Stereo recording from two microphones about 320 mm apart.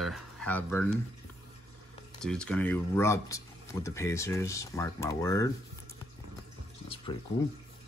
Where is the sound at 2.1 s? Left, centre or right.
Centre.